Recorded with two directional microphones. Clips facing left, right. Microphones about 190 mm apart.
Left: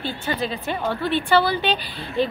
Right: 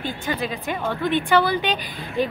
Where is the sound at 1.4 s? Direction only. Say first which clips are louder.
Even; 35° left (ahead or behind).